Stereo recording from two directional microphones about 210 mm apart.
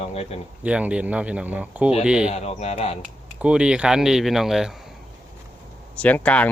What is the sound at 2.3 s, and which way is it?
Speech, 30° left (ahead or behind).